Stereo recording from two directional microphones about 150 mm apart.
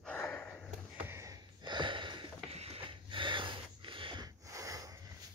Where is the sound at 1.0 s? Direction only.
20° right (ahead or behind).